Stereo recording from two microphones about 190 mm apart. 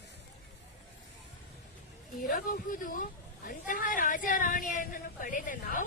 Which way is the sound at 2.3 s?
50° left (ahead or behind).